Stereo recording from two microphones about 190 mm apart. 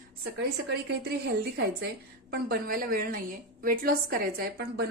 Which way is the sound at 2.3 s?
50° right (ahead or behind).